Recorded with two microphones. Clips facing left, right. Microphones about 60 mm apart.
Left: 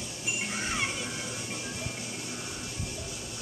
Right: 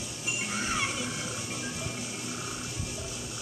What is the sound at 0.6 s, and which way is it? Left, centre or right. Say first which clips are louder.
Music: right 1 dB; centre.